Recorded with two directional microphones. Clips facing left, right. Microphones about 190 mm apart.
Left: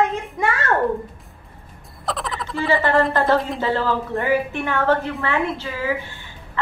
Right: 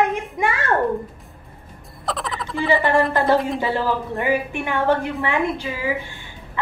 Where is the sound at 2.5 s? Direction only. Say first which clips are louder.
Even; 15° right (ahead or behind).